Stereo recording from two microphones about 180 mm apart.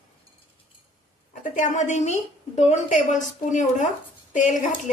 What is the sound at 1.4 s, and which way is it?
A woman's voice, 45° left (ahead or behind).